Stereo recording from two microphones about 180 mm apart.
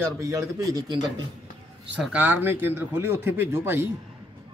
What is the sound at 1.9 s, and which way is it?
A man's voice, 10° right (ahead or behind).